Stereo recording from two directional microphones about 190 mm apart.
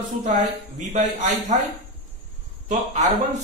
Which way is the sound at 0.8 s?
40° right (ahead or behind).